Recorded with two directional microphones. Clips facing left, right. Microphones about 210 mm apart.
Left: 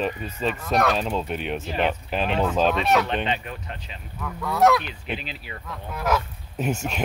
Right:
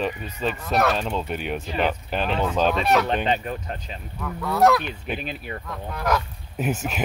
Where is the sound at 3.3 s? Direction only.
40° right (ahead or behind).